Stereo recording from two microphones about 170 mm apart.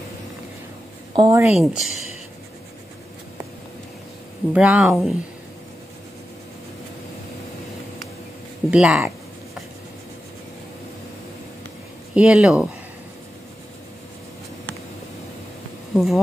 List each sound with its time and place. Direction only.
1.1 s a woman's voice: 25° right (ahead or behind)
1.4 s speech: 5° right (ahead or behind)
4.6 s speech: 5° right (ahead or behind)
8.6 s speech: 5° right (ahead or behind)
12.1 s speech: 5° right (ahead or behind)
15.9 s speech: centre (ahead or behind)